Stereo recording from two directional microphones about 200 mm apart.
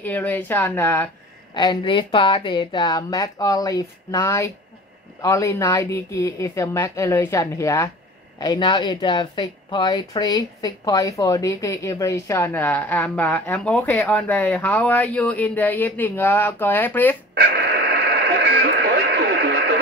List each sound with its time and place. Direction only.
0.0 s speech: 10° left (ahead or behind)
1.5 s speech: 20° left (ahead or behind)
17.9 s radio: 55° right (ahead or behind)